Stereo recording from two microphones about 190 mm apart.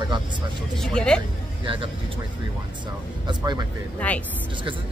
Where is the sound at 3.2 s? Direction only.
20° right (ahead or behind).